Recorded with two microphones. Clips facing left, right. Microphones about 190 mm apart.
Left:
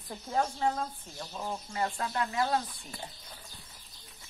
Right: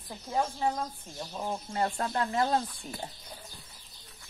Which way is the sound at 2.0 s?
35° right (ahead or behind).